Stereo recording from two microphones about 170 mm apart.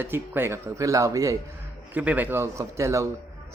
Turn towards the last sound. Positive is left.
turn(degrees=-15)  # may be behind; listen again after turning